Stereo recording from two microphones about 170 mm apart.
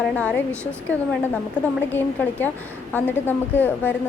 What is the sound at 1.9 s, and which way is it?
A woman's voice, 10° left (ahead or behind).